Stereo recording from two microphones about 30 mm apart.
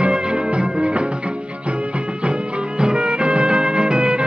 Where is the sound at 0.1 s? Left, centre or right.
Right.